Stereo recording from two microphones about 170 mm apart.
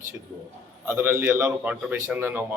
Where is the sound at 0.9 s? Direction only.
15° right (ahead or behind).